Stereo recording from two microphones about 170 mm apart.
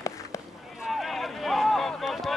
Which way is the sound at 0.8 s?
Centre (ahead or behind).